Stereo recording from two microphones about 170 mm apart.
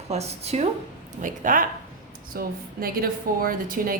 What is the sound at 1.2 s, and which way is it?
A woman's voice, 50° right (ahead or behind).